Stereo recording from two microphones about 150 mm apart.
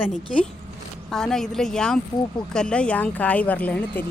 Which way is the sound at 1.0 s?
5° left (ahead or behind).